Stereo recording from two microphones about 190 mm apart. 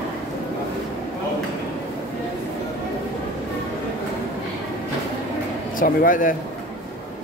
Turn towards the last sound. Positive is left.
turn(degrees=45)  # may be behind; listen again after turning